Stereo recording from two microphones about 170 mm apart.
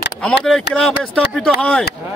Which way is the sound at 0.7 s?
90° left.